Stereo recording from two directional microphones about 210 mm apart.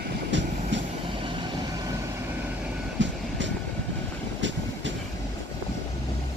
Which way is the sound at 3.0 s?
60° right (ahead or behind).